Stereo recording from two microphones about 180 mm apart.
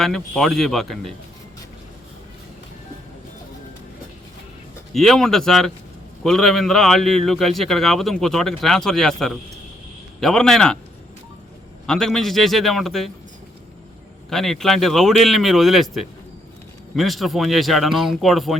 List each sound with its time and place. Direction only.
0.0 s a man's voice: centre (ahead or behind)
4.9 s a man's voice: centre (ahead or behind)
11.9 s a man's voice: 5° left (ahead or behind)
14.3 s a man's voice: centre (ahead or behind)